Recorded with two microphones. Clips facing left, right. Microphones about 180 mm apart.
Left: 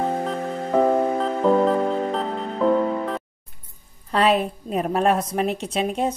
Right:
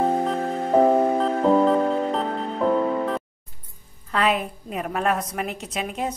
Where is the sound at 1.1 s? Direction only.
Centre (ahead or behind).